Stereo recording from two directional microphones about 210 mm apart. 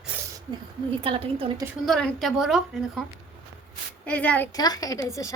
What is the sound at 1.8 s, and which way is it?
A woman's voice, centre (ahead or behind).